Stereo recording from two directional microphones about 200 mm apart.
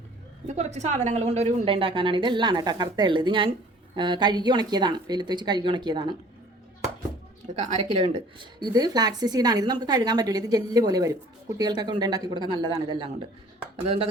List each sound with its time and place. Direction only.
0.4 s a woman's voice: 35° right (ahead or behind)
7.5 s a woman's voice: 35° right (ahead or behind)